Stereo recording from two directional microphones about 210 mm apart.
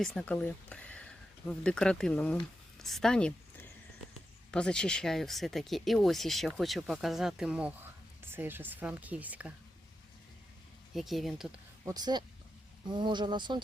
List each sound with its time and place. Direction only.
0.0 s speech: 5° left (ahead or behind)
10.9 s speech: centre (ahead or behind)
11.9 s speech: 20° right (ahead or behind)